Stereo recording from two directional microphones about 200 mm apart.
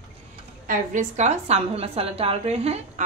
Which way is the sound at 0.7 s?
40° right (ahead or behind).